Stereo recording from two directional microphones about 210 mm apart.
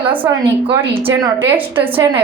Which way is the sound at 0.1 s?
10° right (ahead or behind).